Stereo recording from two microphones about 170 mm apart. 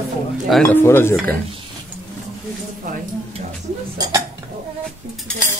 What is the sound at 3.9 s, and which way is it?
Dishes, 25° right (ahead or behind).